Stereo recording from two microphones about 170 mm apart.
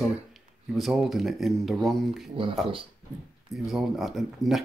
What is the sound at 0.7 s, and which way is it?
Speech, centre (ahead or behind).